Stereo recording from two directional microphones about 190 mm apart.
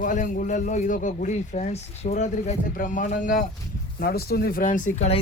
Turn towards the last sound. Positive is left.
turn(degrees=35)  # may be behind; listen again after turning